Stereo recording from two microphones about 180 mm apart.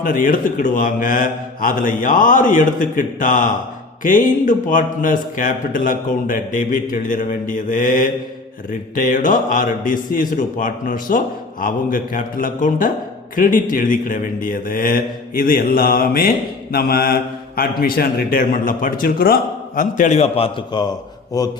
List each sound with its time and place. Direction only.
0.0 s a man's voice: 50° left (ahead or behind)
16.7 s mantra: 55° left (ahead or behind)
17.6 s a man's voice: 55° left (ahead or behind); by 21.5 s 20° left (ahead or behind)